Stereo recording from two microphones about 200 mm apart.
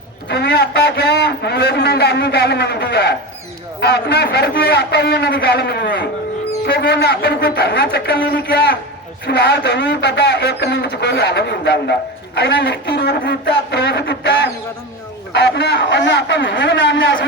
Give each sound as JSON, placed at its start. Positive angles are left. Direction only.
{"t": 0.3, "sound": "a man's voice", "side_deg": 55}